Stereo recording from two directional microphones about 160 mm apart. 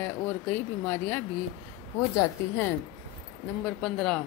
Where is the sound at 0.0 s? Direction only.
10° left (ahead or behind).